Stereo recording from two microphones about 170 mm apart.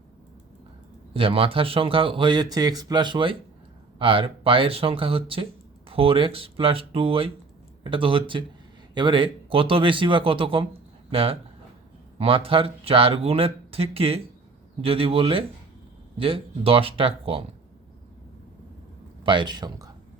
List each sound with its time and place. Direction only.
1.1 s a man's voice: 35° right (ahead or behind)
19.2 s speech: 30° right (ahead or behind)